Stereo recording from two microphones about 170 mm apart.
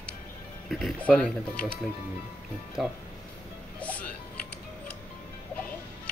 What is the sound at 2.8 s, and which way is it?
Speech, centre (ahead or behind).